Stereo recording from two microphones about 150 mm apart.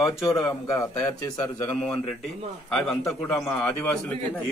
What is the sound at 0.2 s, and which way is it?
Speech, 20° left (ahead or behind).